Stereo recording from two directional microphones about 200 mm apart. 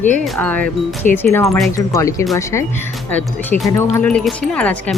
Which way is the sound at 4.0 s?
5° left (ahead or behind).